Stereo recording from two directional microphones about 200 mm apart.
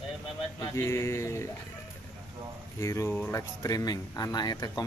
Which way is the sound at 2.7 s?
15° left (ahead or behind).